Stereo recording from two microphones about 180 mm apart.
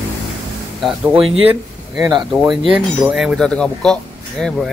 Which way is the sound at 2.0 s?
25° right (ahead or behind).